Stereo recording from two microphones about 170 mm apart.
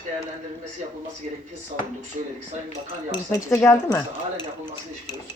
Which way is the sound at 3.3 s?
20° left (ahead or behind).